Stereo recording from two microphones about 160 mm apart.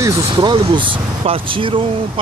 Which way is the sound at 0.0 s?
30° right (ahead or behind).